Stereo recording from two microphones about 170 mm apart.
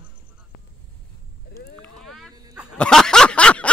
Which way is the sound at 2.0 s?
Centre (ahead or behind).